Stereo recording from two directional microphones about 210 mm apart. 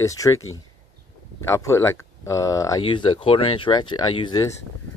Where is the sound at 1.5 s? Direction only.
15° left (ahead or behind).